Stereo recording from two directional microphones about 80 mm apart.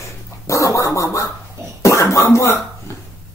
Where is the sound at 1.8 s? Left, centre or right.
Left.